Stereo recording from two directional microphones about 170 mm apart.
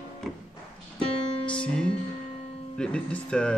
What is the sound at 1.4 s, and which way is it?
Music, 5° left (ahead or behind).